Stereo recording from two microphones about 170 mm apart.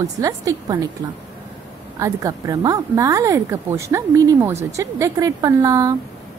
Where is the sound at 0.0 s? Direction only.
20° right (ahead or behind).